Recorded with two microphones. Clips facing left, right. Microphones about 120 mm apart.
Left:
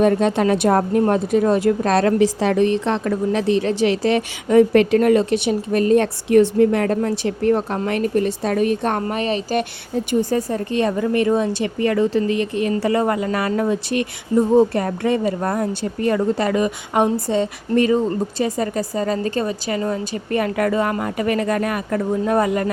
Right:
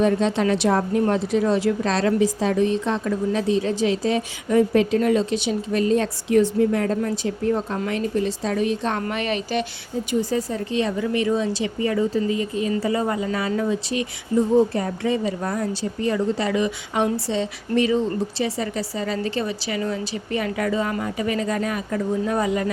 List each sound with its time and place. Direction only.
0.0 s a woman's voice: 55° left (ahead or behind)
9.0 s a woman's voice: 35° left (ahead or behind)
9.6 s a woman's voice: 60° left (ahead or behind)